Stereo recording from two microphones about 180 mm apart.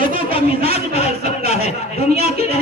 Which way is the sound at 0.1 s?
35° left (ahead or behind).